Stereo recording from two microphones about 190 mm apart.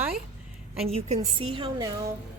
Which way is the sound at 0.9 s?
35° right (ahead or behind).